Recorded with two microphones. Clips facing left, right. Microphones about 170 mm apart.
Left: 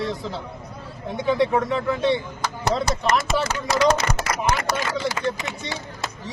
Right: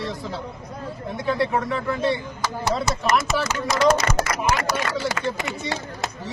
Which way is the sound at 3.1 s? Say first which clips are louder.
Even; 30° left (ahead or behind).